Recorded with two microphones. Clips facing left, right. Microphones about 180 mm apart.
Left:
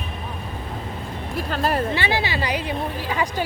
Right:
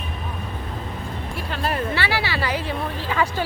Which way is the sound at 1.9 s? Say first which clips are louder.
Left 1 dB; 20° left (ahead or behind).